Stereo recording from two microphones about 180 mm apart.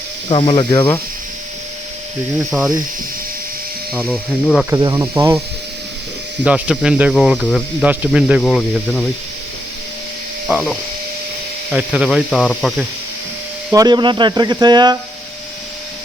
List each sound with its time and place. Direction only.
0.3 s speech: 30° left (ahead or behind)
2.5 s speech: centre (ahead or behind)
3.9 s speech: 5° left (ahead or behind)
4.7 s speech: 20° right (ahead or behind)
6.4 s speech: 5° right (ahead or behind)
10.5 s speech: centre (ahead or behind)
13.7 s speech: 20° right (ahead or behind)